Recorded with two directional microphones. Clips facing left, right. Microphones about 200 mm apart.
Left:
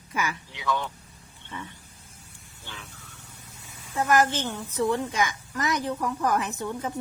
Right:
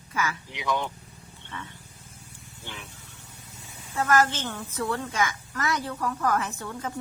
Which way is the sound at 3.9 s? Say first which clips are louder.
Left 1 dB; 15° left (ahead or behind).